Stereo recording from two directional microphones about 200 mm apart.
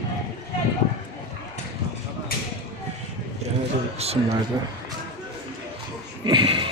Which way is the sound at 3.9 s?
30° right (ahead or behind).